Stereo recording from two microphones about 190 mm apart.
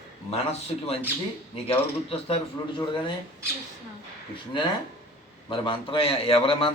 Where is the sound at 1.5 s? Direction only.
30° left (ahead or behind).